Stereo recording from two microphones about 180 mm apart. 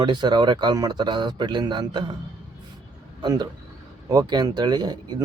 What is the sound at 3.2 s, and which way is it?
Speech, 20° right (ahead or behind).